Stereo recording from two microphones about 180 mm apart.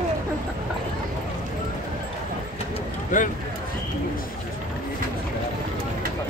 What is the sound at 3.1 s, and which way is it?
Speech, 45° left (ahead or behind).